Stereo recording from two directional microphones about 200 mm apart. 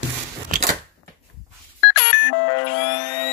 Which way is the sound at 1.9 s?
60° left (ahead or behind).